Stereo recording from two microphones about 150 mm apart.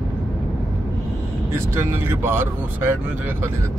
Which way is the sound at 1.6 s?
15° right (ahead or behind).